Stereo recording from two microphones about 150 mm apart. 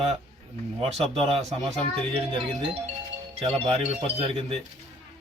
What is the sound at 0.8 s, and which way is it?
Speech, 45° right (ahead or behind).